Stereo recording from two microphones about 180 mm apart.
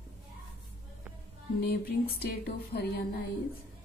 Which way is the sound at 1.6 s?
60° left (ahead or behind).